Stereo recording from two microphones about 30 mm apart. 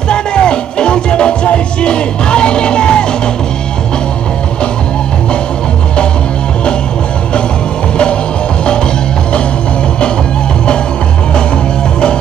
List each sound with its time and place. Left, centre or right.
0.1 s music: left